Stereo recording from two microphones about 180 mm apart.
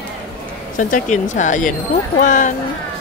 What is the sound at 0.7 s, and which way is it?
Speech, 45° left (ahead or behind).